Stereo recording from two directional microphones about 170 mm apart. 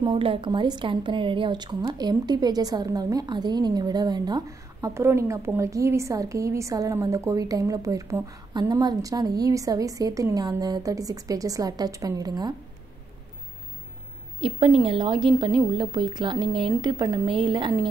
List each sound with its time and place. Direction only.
0.0 s speech: 30° right (ahead or behind)
14.4 s speech: 30° right (ahead or behind)